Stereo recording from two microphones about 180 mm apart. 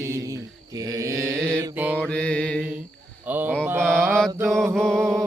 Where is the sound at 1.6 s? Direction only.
10° right (ahead or behind).